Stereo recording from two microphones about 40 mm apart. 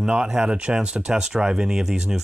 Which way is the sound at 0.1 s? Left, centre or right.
Right.